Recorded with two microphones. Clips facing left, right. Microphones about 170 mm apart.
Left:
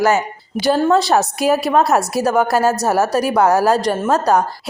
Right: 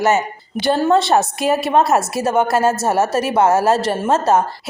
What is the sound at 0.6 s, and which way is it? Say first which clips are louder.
A woman's voice: left 1 dB; centre (ahead or behind).